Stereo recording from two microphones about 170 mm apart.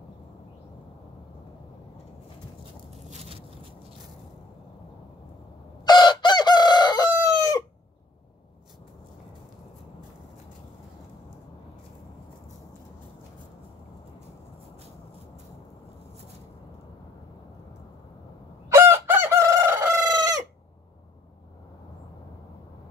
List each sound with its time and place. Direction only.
3.1 s a sound: 35° right (ahead or behind)
5.9 s chicken: 25° left (ahead or behind)
18.7 s chicken: 15° right (ahead or behind)